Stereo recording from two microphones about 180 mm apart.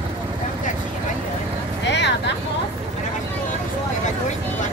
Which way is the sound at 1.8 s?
75° left (ahead or behind).